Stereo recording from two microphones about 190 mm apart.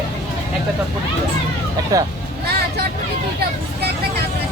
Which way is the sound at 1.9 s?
15° right (ahead or behind).